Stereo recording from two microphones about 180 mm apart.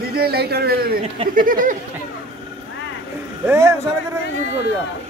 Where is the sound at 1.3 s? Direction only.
50° right (ahead or behind).